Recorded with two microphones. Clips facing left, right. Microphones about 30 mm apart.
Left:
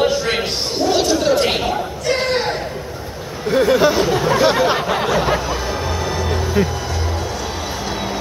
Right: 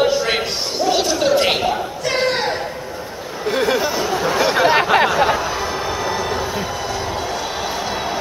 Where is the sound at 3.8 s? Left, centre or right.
Centre.